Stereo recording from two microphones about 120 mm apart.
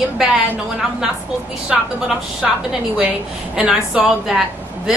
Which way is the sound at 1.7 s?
5° right (ahead or behind).